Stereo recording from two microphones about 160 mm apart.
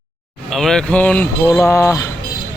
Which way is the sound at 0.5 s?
Centre (ahead or behind).